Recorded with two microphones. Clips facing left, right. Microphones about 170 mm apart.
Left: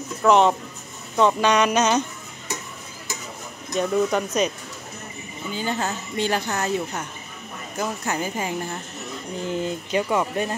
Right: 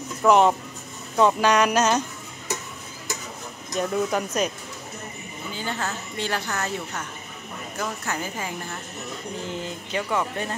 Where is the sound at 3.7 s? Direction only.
5° right (ahead or behind).